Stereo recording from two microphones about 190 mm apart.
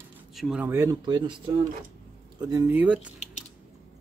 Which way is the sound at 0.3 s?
Centre (ahead or behind).